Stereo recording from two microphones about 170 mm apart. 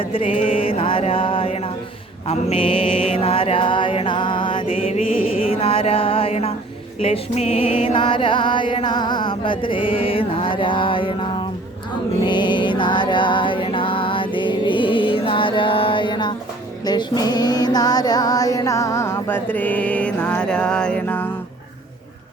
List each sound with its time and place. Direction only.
0.0 s mantra: 30° left (ahead or behind)
7.0 s music: 35° left (ahead or behind)
16.8 s female singing: 25° left (ahead or behind)